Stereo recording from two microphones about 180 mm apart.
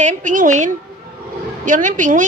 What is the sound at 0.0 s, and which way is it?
Speech, 45° right (ahead or behind).